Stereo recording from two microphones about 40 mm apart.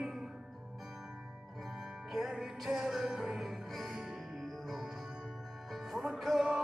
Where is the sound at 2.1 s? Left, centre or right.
Centre.